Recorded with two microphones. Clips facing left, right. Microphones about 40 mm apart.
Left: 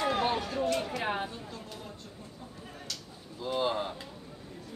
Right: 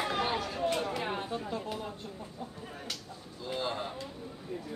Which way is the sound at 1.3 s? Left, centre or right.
Centre.